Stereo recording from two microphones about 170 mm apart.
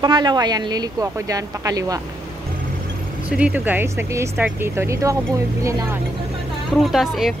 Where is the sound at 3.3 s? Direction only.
10° right (ahead or behind).